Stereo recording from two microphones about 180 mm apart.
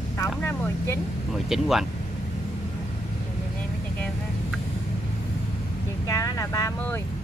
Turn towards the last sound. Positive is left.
turn(degrees=15)  # may be behind; listen again after turning